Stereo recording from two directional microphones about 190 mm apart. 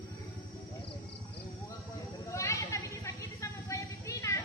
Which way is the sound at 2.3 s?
15° left (ahead or behind).